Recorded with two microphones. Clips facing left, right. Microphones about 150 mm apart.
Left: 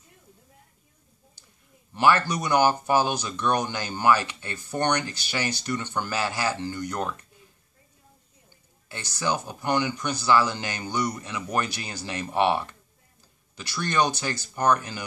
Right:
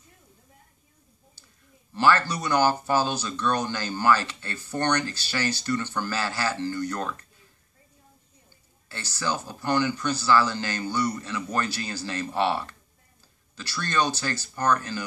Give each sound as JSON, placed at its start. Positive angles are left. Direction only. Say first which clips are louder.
{"t": 2.0, "sound": "speech", "louder": "left 1 dB", "side_deg": 15}
{"t": 8.8, "sound": "speech", "louder": "left 2 dB", "side_deg": 15}